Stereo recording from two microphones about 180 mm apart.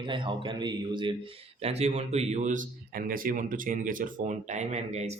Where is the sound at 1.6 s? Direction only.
35° right (ahead or behind).